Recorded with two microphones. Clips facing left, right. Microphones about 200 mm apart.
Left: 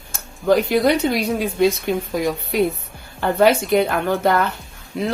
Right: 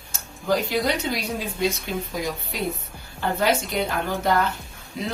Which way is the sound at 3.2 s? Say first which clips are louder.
Left 7 dB; 60° left (ahead or behind).